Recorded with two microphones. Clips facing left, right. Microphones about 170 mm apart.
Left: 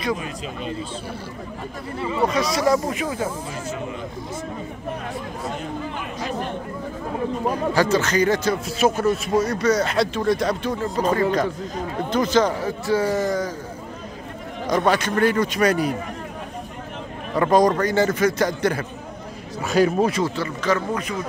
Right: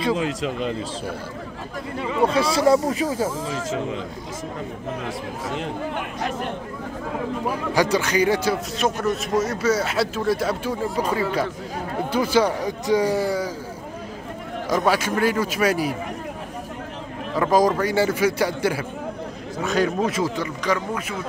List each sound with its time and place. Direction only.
0.1 s speech: 85° right
2.2 s speech: 30° right (ahead or behind)
3.3 s speech: 90° right
5.6 s speech: 65° right (ahead or behind)
7.4 s a man's voice: 15° right (ahead or behind)
8.7 s a man's voice: 5° left (ahead or behind)
14.7 s speech: 5° right (ahead or behind)
17.4 s a man's voice: centre (ahead or behind)
19.7 s speech: 10° left (ahead or behind)
20.3 s a man's voice: 10° right (ahead or behind)